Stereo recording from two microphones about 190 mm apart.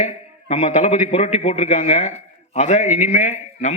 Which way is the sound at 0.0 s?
30° left (ahead or behind).